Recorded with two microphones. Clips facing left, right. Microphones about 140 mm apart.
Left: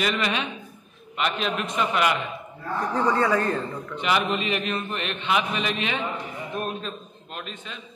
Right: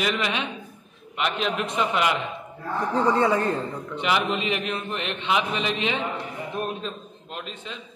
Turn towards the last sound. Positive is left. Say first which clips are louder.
# right 1 dB
turn(degrees=-20)  # may be behind; listen again after turning